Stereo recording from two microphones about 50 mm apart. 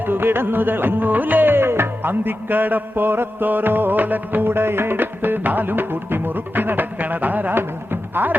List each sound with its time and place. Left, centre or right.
0.0 s music: right
8.1 s speech: right